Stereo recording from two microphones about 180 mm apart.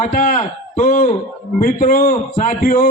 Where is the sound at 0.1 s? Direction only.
50° left (ahead or behind).